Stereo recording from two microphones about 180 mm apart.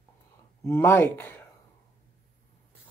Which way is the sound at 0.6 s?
15° left (ahead or behind).